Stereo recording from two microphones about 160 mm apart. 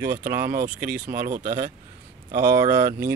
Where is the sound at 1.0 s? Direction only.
65° right (ahead or behind).